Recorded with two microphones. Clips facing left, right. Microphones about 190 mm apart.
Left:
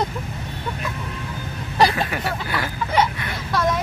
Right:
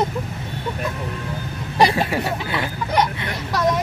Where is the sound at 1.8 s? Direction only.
20° right (ahead or behind).